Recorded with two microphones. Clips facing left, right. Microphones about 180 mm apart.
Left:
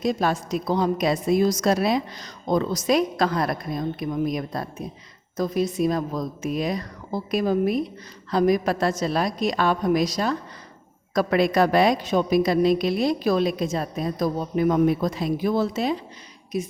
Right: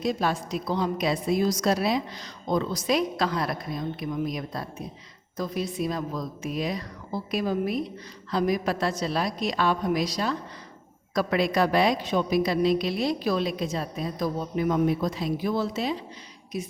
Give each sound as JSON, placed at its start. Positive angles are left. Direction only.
{"t": 0.0, "sound": "a woman's voice", "side_deg": 50}